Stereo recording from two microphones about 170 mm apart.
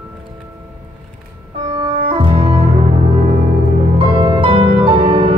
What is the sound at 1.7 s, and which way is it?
Music, 30° right (ahead or behind).